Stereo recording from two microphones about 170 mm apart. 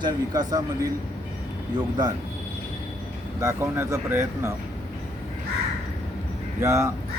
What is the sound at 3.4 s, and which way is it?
Speech, 15° right (ahead or behind).